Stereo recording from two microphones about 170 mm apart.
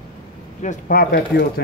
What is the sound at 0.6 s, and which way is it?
Speech, 50° left (ahead or behind).